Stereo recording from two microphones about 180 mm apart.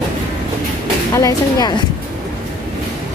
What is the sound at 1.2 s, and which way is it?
Speech, 20° left (ahead or behind).